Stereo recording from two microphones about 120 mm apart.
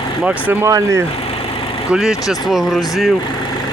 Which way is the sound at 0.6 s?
25° right (ahead or behind).